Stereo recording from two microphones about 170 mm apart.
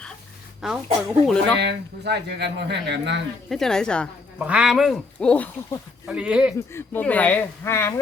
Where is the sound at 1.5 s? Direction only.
90° right.